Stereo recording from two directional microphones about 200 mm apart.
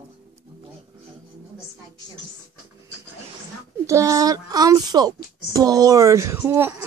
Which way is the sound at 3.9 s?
15° right (ahead or behind).